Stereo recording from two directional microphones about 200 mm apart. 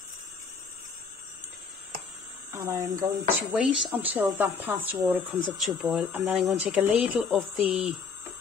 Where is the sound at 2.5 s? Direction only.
15° right (ahead or behind).